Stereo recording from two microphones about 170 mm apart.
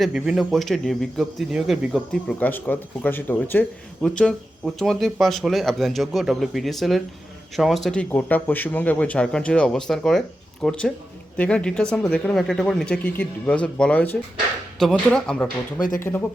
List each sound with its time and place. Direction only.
0.0 s speech: centre (ahead or behind)
2.4 s speech: 10° left (ahead or behind)
15.8 s speech: 55° left (ahead or behind)